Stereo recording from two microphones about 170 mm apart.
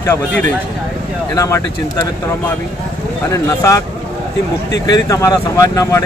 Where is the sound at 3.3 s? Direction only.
20° left (ahead or behind).